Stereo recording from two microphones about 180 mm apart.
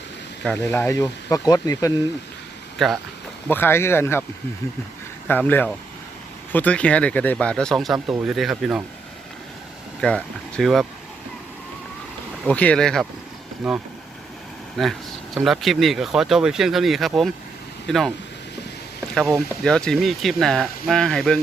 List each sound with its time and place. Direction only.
0.4 s speech: 10° left (ahead or behind)
2.7 s speech: centre (ahead or behind)
3.5 s speech: 10° left (ahead or behind)
5.3 s speech: 10° left (ahead or behind)
10.0 s speech: 5° left (ahead or behind)
12.5 s speech: 5° left (ahead or behind)
19.1 s speech: 5° left (ahead or behind)